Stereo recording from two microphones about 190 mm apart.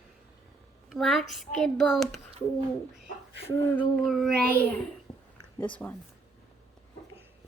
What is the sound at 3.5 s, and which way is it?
Child singing, 10° left (ahead or behind).